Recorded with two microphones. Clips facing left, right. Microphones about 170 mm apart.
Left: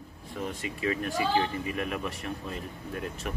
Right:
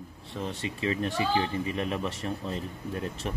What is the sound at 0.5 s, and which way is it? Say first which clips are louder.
Speech: right 1 dB; 30° right (ahead or behind).